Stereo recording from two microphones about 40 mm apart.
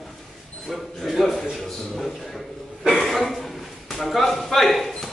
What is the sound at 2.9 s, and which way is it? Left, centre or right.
Cough, centre.